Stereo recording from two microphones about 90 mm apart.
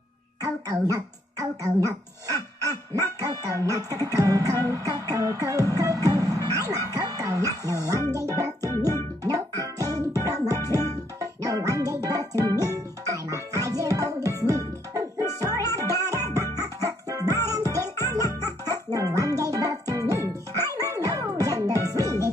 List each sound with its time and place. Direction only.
0.4 s speech: 40° right (ahead or behind)
3.6 s music: 40° right (ahead or behind)
8.1 s speech: 35° right (ahead or behind)
8.8 s music: 40° right (ahead or behind)